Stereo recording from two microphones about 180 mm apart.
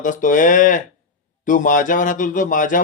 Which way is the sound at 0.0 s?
45° left (ahead or behind).